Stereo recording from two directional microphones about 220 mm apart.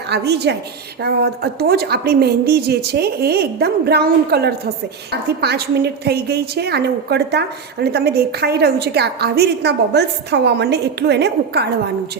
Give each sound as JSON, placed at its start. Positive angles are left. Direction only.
{"t": 0.1, "sound": "a woman's voice", "side_deg": -50}